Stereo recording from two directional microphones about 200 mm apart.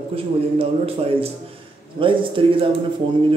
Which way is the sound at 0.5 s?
30° right (ahead or behind).